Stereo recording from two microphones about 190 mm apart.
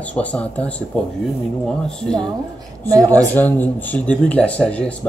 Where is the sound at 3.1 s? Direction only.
10° left (ahead or behind).